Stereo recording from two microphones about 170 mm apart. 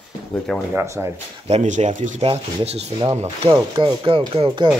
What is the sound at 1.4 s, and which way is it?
Speech, 45° right (ahead or behind).